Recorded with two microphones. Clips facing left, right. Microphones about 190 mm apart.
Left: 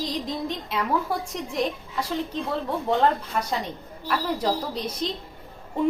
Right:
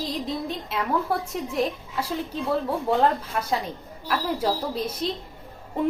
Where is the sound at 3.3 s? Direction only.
5° right (ahead or behind).